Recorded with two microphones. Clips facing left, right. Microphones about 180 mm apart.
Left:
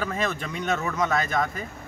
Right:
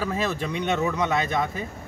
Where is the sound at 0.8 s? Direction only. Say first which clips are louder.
Right 1 dB; 15° right (ahead or behind).